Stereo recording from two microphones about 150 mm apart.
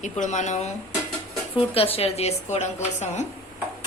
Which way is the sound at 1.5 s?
40° left (ahead or behind).